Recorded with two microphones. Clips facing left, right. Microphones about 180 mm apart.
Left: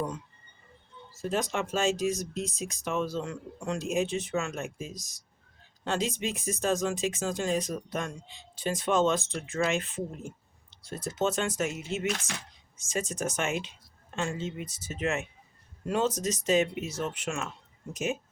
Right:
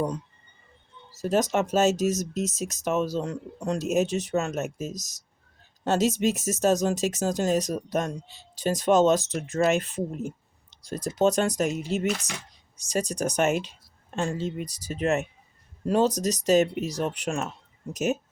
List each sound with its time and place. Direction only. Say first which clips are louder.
1.1 s speech: right 6 dB; 40° right (ahead or behind)
12.7 s speech: right 5 dB; 40° right (ahead or behind)